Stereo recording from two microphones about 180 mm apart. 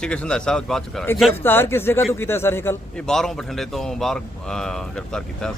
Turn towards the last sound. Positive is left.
turn(degrees=5)  # may be behind; listen again after turning